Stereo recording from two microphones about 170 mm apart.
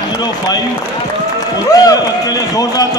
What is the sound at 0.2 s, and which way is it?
Speech, 20° left (ahead or behind).